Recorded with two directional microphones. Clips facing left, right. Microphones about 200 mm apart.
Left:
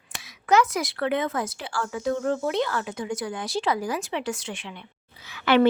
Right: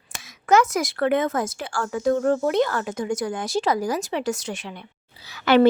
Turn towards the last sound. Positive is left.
turn(degrees=-40)  # may be behind; listen again after turning